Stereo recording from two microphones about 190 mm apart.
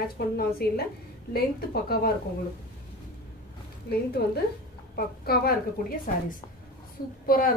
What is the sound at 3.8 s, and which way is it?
A woman's voice, 55° left (ahead or behind).